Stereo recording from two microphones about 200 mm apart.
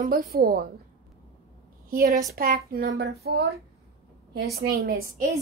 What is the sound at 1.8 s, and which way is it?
A woman's voice, 45° right (ahead or behind).